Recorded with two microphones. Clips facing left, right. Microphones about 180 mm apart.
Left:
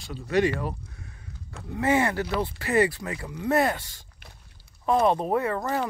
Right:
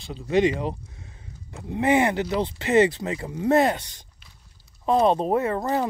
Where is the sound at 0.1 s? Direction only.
20° right (ahead or behind).